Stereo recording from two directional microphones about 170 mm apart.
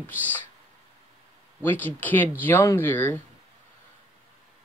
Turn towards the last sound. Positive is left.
turn(degrees=10)  # may be behind; listen again after turning